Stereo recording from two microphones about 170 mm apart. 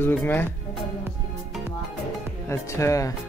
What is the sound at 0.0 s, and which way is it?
Speech, 15° left (ahead or behind).